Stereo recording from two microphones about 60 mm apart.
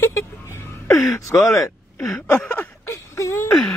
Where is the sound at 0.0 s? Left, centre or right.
Left.